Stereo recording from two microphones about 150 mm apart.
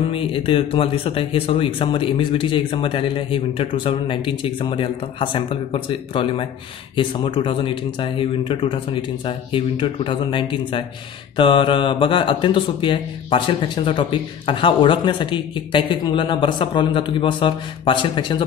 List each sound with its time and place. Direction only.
0.1 s speech: 35° left (ahead or behind)